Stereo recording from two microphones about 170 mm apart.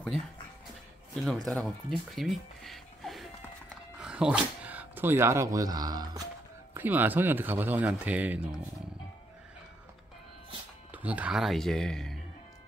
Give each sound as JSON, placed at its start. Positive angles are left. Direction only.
{"t": 1.2, "sound": "speech", "side_deg": 0}
{"t": 6.7, "sound": "speech", "side_deg": -10}
{"t": 10.9, "sound": "speech", "side_deg": -10}